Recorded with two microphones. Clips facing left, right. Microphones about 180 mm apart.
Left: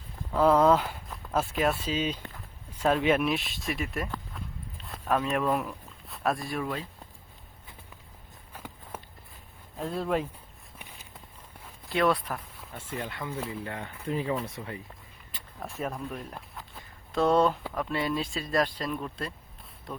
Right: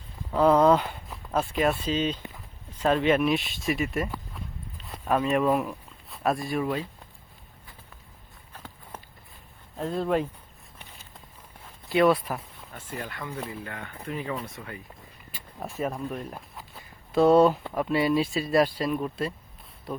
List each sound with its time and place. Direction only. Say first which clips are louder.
0.3 s speech: right 2 dB; 5° right (ahead or behind)
8.5 s a sound: left 1 dB; 10° left (ahead or behind)
9.7 s speech: right 3 dB; centre (ahead or behind)
11.9 s speech: right 5 dB; 5° right (ahead or behind)
13.0 s speech: even; 20° left (ahead or behind)
15.3 s a sound: right 3 dB; centre (ahead or behind)
17.1 s speech: right 5 dB; 10° right (ahead or behind)